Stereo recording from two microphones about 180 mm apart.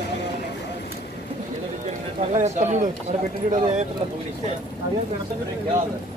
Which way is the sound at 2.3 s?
40° right (ahead or behind).